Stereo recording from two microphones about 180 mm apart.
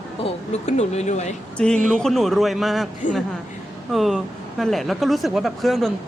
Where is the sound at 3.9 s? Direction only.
Centre (ahead or behind).